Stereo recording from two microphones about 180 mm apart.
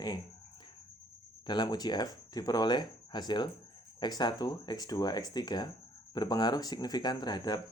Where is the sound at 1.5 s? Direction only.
25° left (ahead or behind).